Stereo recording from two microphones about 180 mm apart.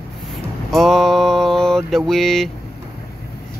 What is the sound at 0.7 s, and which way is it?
Mantra, centre (ahead or behind).